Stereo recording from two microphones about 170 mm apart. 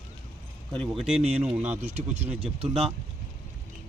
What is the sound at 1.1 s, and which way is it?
Speech, 40° right (ahead or behind).